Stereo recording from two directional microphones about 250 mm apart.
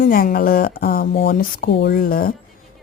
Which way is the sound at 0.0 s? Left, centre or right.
Left.